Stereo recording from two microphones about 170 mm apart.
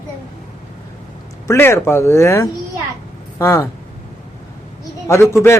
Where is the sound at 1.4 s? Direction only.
15° left (ahead or behind).